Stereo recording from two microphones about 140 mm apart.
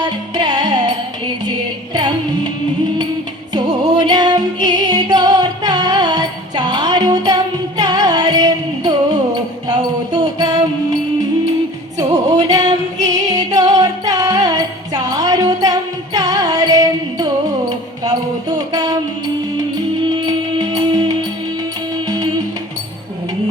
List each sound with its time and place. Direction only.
0.0 s music: 30° right (ahead or behind)
3.5 s music: 30° right (ahead or behind)
9.6 s a sound: 30° right (ahead or behind)
12.1 s music: 25° right (ahead or behind)
20.1 s music: 30° right (ahead or behind)